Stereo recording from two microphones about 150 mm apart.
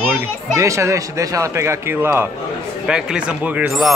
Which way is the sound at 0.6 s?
20° right (ahead or behind).